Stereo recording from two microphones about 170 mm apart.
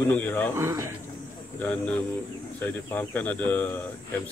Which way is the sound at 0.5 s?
15° right (ahead or behind).